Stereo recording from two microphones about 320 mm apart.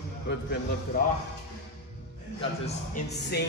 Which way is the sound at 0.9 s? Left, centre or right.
Left.